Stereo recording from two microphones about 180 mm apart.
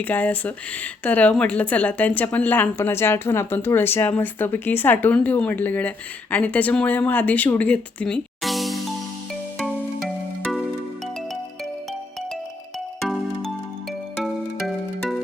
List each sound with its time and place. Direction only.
0.0 s a woman's voice: 10° left (ahead or behind)
13.0 s music: centre (ahead or behind)